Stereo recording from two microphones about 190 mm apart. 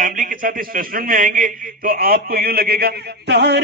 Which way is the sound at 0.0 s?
45° right (ahead or behind).